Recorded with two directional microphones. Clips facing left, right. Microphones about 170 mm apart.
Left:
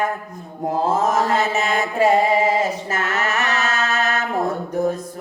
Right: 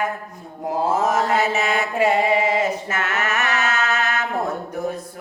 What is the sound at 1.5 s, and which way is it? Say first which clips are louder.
Mantra: left 1 dB; 40° left (ahead or behind).